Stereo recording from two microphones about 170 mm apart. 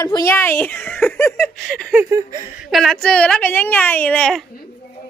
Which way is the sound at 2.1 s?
20° right (ahead or behind).